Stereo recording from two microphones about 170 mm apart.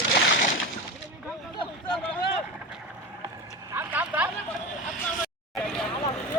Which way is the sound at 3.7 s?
10° right (ahead or behind).